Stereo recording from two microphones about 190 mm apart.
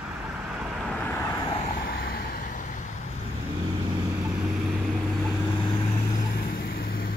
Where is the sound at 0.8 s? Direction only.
5° left (ahead or behind).